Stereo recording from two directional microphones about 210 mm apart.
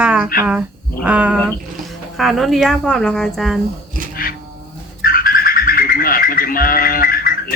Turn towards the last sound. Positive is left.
turn(degrees=45)  # may be behind; listen again after turning